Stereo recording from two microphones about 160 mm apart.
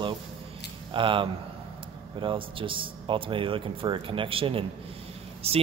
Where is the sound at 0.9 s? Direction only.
30° right (ahead or behind).